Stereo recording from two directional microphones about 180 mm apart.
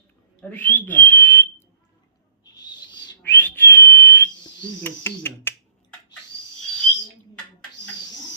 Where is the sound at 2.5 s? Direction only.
25° left (ahead or behind).